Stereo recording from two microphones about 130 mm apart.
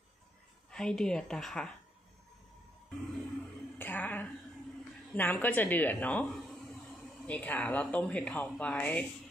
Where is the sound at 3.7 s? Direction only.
15° left (ahead or behind).